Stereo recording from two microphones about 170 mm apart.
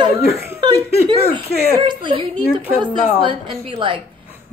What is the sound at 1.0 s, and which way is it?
A woman's voice, 30° right (ahead or behind).